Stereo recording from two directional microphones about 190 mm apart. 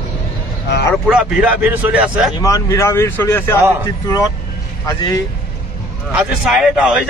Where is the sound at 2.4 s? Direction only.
15° left (ahead or behind).